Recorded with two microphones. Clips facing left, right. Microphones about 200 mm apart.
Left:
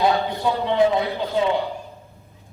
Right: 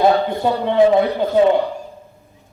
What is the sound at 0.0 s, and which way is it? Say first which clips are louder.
A man's voice: right 5 dB; 50° right (ahead or behind).